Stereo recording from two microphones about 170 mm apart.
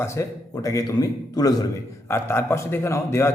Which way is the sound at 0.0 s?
15° left (ahead or behind).